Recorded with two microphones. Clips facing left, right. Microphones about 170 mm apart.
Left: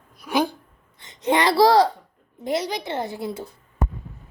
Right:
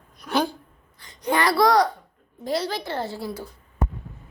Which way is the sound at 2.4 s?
20° left (ahead or behind).